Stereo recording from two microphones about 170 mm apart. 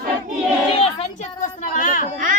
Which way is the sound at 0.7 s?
35° left (ahead or behind).